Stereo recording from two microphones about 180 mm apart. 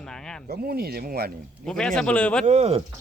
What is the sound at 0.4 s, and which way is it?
Speech, 55° right (ahead or behind).